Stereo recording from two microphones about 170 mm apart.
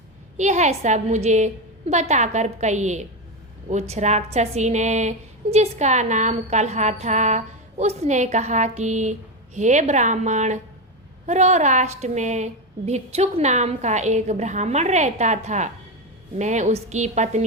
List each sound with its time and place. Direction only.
0.3 s a woman's voice: 45° right (ahead or behind)